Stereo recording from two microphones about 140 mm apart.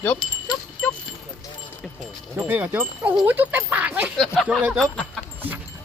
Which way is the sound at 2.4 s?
10° right (ahead or behind).